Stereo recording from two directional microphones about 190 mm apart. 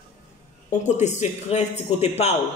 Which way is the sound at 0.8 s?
40° left (ahead or behind).